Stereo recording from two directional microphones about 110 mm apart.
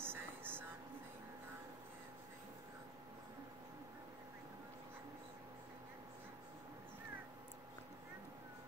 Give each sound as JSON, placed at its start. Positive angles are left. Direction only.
{"t": 0.0, "sound": "vehicle", "side_deg": -20}